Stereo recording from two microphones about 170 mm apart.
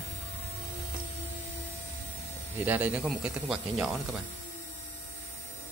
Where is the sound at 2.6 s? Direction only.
10° right (ahead or behind).